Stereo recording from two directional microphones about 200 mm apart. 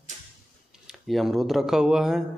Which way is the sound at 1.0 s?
Centre (ahead or behind).